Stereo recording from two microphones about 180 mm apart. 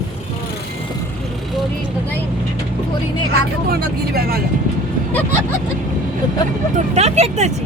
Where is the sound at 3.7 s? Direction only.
60° right (ahead or behind).